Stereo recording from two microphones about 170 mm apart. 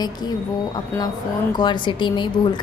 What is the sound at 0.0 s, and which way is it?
A woman's voice, 25° left (ahead or behind).